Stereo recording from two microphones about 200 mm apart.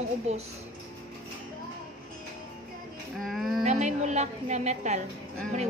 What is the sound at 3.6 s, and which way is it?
Music, 35° right (ahead or behind).